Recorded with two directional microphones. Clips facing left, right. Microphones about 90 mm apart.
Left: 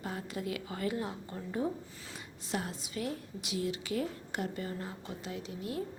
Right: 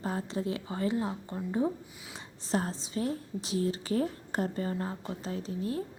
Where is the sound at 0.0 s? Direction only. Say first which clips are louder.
Right 5 dB; 30° right (ahead or behind).